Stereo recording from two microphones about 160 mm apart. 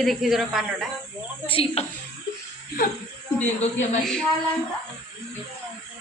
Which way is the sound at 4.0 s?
5° left (ahead or behind).